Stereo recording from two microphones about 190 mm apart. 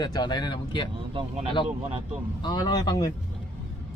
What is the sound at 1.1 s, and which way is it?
Speech, 30° right (ahead or behind).